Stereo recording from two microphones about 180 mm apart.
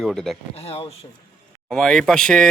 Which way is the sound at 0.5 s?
35° left (ahead or behind).